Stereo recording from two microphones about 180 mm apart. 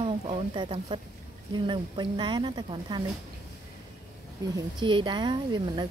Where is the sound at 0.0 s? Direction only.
30° right (ahead or behind).